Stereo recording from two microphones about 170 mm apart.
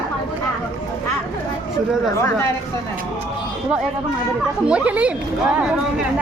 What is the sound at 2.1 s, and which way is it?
Speech, 15° left (ahead or behind).